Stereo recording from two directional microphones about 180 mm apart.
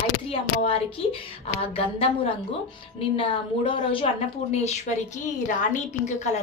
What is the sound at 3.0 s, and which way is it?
Speech, 30° left (ahead or behind).